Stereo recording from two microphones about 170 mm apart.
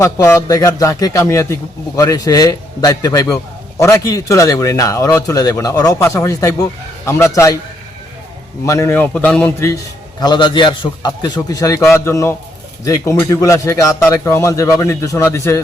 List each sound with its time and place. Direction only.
0.0 s a man's voice: 15° left (ahead or behind)
8.6 s a man's voice: 20° left (ahead or behind)
10.2 s a man's voice: 25° left (ahead or behind)